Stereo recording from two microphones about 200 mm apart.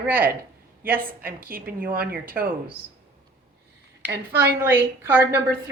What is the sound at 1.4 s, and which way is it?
A woman's voice, 45° right (ahead or behind).